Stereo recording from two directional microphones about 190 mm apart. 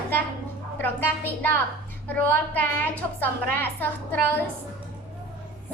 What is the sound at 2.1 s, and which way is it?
A woman's voice, 10° left (ahead or behind).